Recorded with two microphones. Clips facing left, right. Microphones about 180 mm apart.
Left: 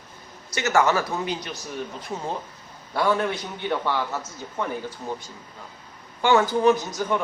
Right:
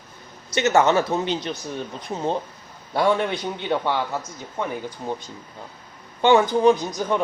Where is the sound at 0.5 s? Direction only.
20° right (ahead or behind).